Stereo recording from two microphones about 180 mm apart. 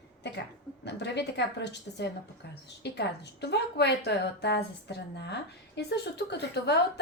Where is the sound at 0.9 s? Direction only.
70° left (ahead or behind).